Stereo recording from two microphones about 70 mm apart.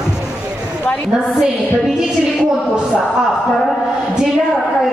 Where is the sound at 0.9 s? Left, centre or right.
Centre.